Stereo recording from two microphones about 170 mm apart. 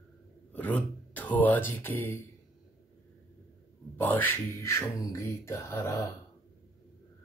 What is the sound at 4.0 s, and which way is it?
Speech, 10° left (ahead or behind).